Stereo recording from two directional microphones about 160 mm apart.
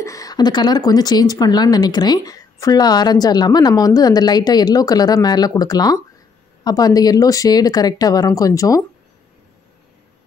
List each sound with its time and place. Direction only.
0.0 s speech: 20° left (ahead or behind)